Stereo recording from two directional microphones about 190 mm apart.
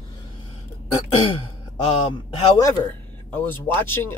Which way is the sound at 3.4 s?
10° left (ahead or behind).